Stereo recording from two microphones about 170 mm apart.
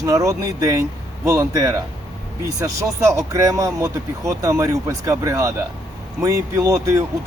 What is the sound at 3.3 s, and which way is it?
Speech, 20° right (ahead or behind).